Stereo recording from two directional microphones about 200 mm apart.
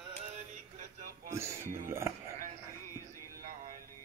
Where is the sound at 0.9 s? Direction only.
45° right (ahead or behind).